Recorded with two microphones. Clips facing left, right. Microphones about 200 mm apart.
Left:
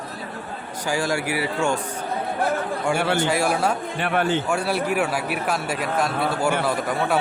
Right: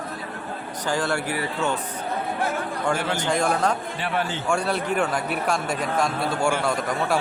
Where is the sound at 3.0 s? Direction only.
65° left (ahead or behind).